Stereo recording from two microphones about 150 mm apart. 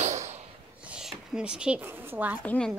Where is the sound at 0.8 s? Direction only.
5° right (ahead or behind).